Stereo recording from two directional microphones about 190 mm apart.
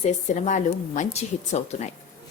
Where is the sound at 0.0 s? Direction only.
40° left (ahead or behind).